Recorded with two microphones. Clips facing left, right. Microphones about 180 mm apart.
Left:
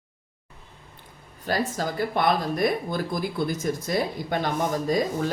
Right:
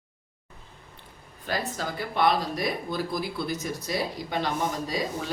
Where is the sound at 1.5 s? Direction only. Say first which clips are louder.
Left 4 dB; 45° left (ahead or behind).